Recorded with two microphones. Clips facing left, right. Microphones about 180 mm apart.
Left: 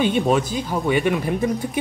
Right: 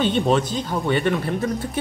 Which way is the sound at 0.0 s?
10° left (ahead or behind).